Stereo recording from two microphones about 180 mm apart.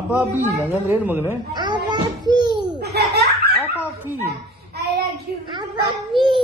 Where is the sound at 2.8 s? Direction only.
65° right (ahead or behind).